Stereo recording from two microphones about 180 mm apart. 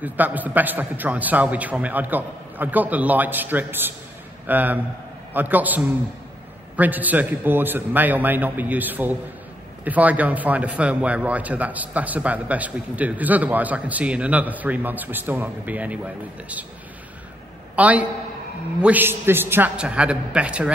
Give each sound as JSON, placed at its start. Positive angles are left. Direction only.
{"t": 0.0, "sound": "a man's voice", "side_deg": -10}
{"t": 17.7, "sound": "a man's voice", "side_deg": -10}